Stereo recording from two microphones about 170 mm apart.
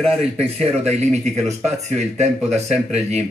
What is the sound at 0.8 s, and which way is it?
Speech, 40° right (ahead or behind).